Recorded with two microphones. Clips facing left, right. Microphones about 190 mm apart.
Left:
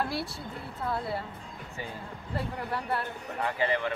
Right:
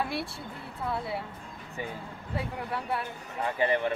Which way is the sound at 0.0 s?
Centre (ahead or behind).